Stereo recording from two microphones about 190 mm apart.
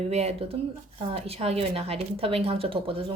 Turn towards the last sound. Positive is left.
turn(degrees=-30)  # may be behind; listen again after turning